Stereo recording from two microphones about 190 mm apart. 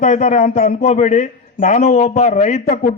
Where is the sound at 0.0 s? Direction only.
40° left (ahead or behind).